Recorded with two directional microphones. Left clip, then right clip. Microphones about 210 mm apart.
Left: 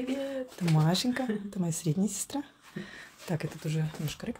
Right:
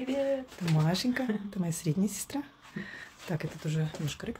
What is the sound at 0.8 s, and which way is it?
Speech, 15° left (ahead or behind).